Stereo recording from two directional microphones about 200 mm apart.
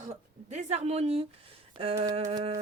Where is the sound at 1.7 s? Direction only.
30° right (ahead or behind).